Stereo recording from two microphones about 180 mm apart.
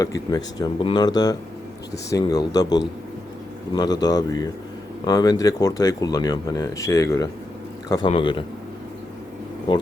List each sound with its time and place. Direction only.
0.0 s speech: 20° left (ahead or behind)